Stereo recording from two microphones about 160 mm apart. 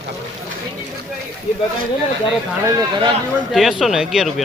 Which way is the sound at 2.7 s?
30° right (ahead or behind).